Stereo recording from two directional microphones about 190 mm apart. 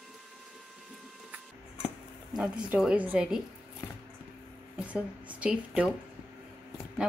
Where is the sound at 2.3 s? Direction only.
5° right (ahead or behind).